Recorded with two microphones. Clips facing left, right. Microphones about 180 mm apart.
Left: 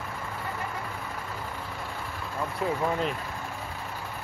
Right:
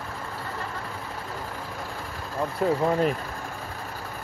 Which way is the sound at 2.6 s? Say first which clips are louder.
Right 6 dB; 40° right (ahead or behind).